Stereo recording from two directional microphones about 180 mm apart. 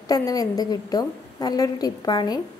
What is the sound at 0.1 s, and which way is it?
A woman's voice, 20° left (ahead or behind).